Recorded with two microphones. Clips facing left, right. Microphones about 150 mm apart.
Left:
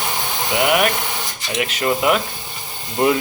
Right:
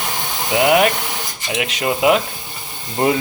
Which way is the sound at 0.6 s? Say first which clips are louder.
Right 4 dB; 25° right (ahead or behind).